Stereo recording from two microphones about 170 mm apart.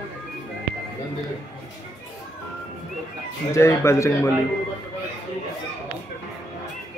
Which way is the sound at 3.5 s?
15° left (ahead or behind).